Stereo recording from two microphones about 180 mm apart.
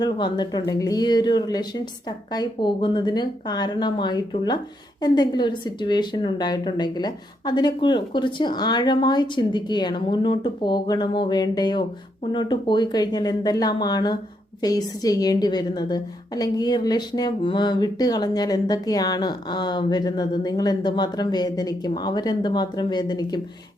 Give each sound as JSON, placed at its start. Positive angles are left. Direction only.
{"t": 0.0, "sound": "a woman's voice", "side_deg": 25}